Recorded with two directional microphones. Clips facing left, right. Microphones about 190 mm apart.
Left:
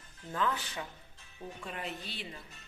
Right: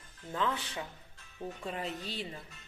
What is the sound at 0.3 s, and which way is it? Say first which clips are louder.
Speech: even; 25° right (ahead or behind).